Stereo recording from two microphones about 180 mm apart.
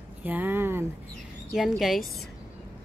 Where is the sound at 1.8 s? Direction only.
Centre (ahead or behind).